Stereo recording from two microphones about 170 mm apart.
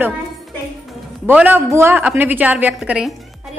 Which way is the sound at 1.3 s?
10° right (ahead or behind).